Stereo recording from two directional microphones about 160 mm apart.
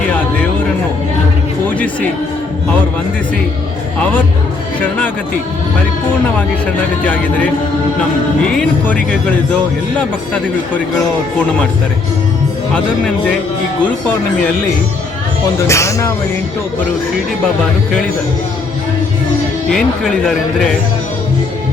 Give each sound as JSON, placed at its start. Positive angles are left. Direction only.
{"t": 15.6, "sound": "speech", "side_deg": 20}
{"t": 19.7, "sound": "speech", "side_deg": 5}